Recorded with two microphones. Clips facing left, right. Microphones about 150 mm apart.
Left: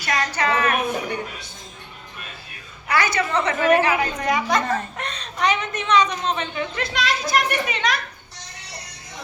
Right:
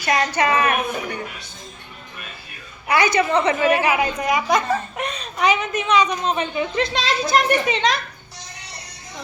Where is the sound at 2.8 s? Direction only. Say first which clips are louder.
Right 4 dB; 15° right (ahead or behind).